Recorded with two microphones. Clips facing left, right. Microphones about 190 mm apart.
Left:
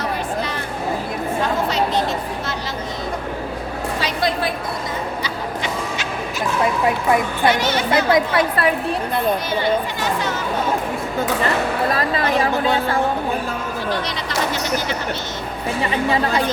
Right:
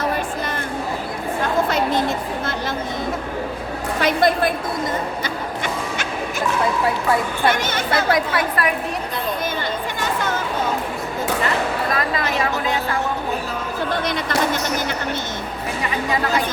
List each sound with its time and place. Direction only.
1.6 s a sound: 50° right (ahead or behind)
4.0 s a woman's voice: 50° right (ahead or behind)
5.2 s music: 50° right (ahead or behind)
7.4 s a woman's voice: 50° right (ahead or behind)
7.9 s a woman's voice: 20° left (ahead or behind)
10.0 s a woman's voice: 50° right (ahead or behind)
11.9 s chatter: 30° left (ahead or behind)